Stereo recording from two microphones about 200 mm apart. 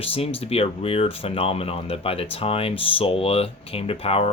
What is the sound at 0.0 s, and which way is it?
Speech, 30° left (ahead or behind).